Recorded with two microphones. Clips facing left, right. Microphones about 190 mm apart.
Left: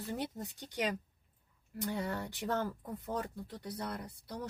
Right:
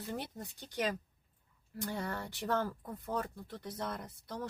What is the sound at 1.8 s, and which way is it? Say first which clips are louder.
Speech: left 2 dB; 15° left (ahead or behind).